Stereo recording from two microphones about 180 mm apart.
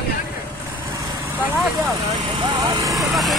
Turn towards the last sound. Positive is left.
turn(degrees=0)  # may be behind; listen again after turning